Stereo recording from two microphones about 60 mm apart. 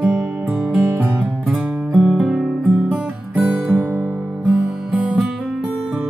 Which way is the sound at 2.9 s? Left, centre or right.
Right.